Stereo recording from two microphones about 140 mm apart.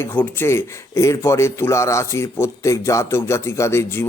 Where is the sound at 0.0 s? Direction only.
15° left (ahead or behind).